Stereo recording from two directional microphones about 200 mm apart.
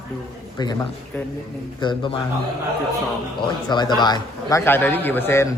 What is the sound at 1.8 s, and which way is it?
Speech, 25° left (ahead or behind).